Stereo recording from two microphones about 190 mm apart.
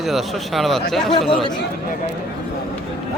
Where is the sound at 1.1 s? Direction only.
30° left (ahead or behind).